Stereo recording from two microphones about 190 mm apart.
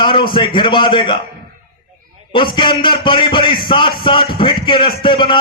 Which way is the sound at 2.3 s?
25° left (ahead or behind).